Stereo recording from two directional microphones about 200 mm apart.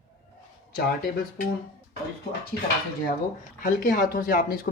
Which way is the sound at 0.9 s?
45° left (ahead or behind).